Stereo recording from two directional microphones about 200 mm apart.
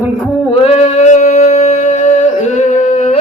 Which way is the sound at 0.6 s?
30° left (ahead or behind).